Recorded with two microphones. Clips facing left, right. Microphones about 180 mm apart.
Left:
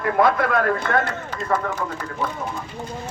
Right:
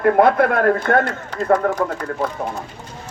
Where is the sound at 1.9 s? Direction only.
60° right (ahead or behind).